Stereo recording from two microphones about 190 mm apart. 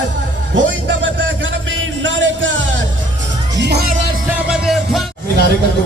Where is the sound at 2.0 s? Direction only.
80° right.